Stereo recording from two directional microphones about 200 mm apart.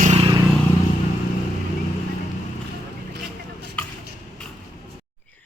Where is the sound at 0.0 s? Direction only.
30° right (ahead or behind).